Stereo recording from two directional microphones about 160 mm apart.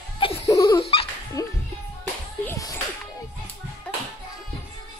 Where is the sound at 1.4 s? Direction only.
20° left (ahead or behind).